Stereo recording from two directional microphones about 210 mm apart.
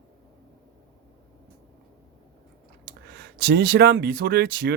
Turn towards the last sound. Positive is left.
turn(degrees=-50)  # may be behind; listen again after turning